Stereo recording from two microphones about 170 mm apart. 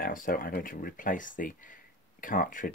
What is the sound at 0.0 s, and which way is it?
Speech, 55° left (ahead or behind).